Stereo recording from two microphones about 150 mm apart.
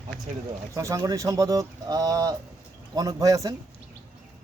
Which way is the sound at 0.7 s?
20° right (ahead or behind).